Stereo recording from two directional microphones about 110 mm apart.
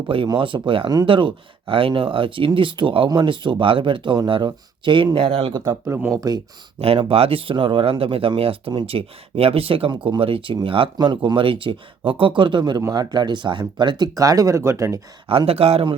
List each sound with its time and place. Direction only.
0.3 s speech: 50° right (ahead or behind)
5.9 s speech: 25° right (ahead or behind)
6.1 s speech: 35° right (ahead or behind)
6.8 s speech: 60° right (ahead or behind); by 15.0 s 25° right (ahead or behind)
15.3 s speech: 60° right (ahead or behind)